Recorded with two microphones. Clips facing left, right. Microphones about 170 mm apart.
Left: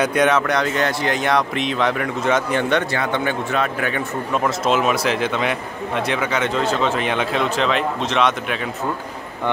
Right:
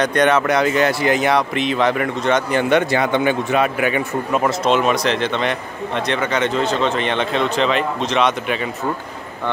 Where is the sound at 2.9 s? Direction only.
15° right (ahead or behind).